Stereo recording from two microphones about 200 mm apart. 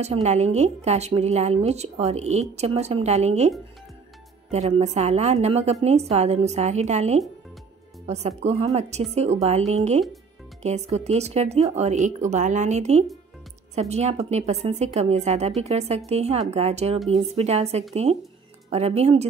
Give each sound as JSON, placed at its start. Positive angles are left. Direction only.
{"t": 0.0, "sound": "a woman's voice", "side_deg": -35}